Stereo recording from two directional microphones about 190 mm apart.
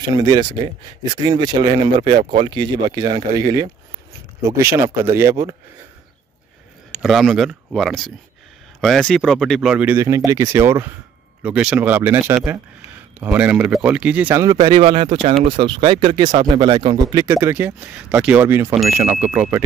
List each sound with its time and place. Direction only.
0.1 s speech: 20° right (ahead or behind)
7.0 s speech: centre (ahead or behind)